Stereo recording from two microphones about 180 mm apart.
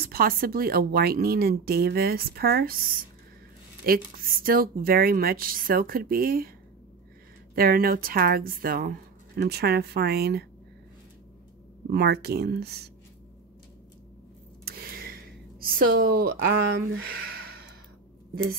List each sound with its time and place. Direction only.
0.0 s speech: 55° right (ahead or behind)
7.5 s speech: 55° right (ahead or behind)
11.9 s speech: 65° right (ahead or behind)
14.6 s a sound: 55° right (ahead or behind)
15.6 s speech: 55° right (ahead or behind)
17.0 s a sound: 55° right (ahead or behind)